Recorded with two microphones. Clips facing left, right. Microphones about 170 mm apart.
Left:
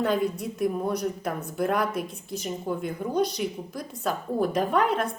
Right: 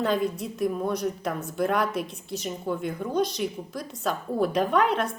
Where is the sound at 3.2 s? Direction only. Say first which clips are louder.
Even; 55° left (ahead or behind).